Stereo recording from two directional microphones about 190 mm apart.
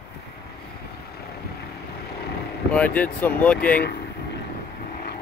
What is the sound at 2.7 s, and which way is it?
Speech, 10° left (ahead or behind).